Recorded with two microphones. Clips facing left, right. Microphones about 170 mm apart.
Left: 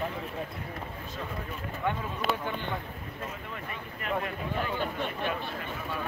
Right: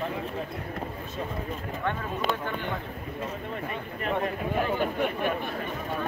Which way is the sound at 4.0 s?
35° right (ahead or behind).